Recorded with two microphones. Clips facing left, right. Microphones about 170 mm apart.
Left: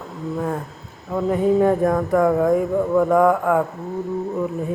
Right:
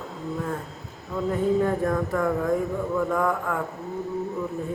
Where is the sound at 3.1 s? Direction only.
90° left.